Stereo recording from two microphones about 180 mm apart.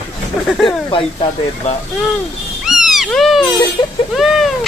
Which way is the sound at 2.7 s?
Centre (ahead or behind).